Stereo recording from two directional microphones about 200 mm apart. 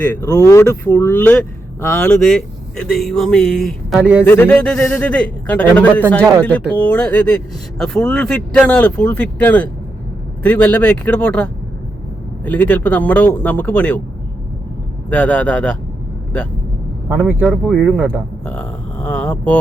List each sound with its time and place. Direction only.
0.3 s a man's voice: 15° left (ahead or behind); by 4.2 s 5° right (ahead or behind)
4.3 s a man's voice: 10° left (ahead or behind)
15.1 s a man's voice: 5° left (ahead or behind)
17.1 s speech: 10° right (ahead or behind)
18.4 s speech: 10° left (ahead or behind)